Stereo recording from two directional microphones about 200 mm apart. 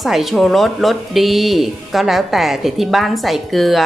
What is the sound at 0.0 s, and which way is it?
Speech, centre (ahead or behind).